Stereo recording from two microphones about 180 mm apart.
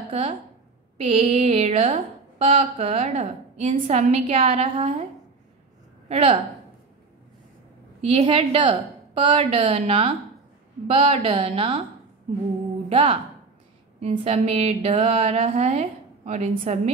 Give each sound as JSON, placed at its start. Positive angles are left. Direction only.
{"t": 0.1, "sound": "a woman's voice", "side_deg": -30}
{"t": 6.0, "sound": "a woman's voice", "side_deg": -35}
{"t": 8.0, "sound": "a woman's voice", "side_deg": -35}
{"t": 9.5, "sound": "a woman's voice", "side_deg": -40}
{"t": 12.9, "sound": "a woman's voice", "side_deg": -40}